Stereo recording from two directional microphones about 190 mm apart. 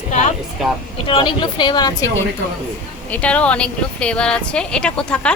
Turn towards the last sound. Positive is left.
turn(degrees=5)  # may be behind; listen again after turning